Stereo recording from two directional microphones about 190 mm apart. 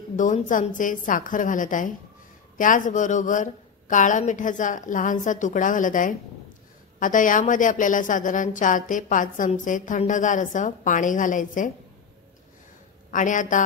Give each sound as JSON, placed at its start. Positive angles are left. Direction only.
{"t": 0.1, "sound": "a woman's voice", "side_deg": 45}
{"t": 13.1, "sound": "a woman's voice", "side_deg": 40}